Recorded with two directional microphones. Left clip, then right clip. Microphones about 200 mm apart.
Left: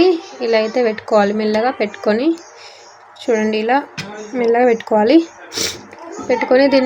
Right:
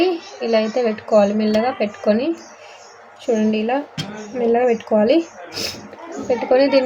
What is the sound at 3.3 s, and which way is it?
A woman's voice, 40° left (ahead or behind).